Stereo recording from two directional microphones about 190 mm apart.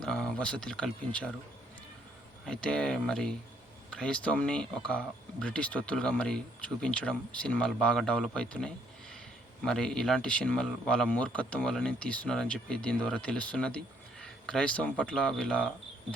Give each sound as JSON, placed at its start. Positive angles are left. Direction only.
{"t": 0.0, "sound": "speech", "side_deg": 5}
{"t": 2.5, "sound": "speech", "side_deg": 5}